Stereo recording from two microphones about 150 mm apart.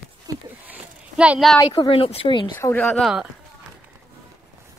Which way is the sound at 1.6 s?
35° left (ahead or behind).